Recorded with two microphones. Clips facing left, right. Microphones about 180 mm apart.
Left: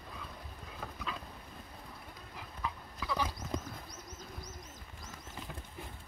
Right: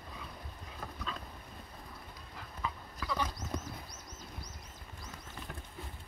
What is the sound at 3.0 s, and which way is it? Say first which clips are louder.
Horse: even; 5° left (ahead or behind).